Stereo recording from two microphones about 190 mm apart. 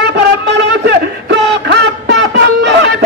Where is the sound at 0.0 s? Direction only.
60° right (ahead or behind).